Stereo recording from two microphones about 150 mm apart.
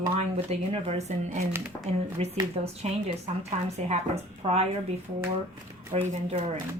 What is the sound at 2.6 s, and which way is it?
A woman's voice, 45° right (ahead or behind).